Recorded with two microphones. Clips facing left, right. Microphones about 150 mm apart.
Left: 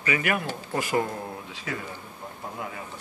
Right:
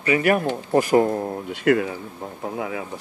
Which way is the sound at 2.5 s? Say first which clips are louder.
Right 9 dB; 90° right.